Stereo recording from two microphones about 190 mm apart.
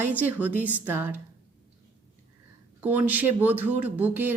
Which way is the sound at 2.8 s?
10° right (ahead or behind).